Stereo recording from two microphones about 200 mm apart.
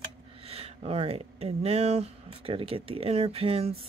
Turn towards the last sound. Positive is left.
turn(degrees=-30)  # may be behind; listen again after turning